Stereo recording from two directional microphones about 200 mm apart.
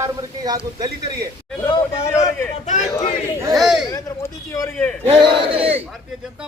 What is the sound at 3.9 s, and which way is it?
Speech, 15° left (ahead or behind).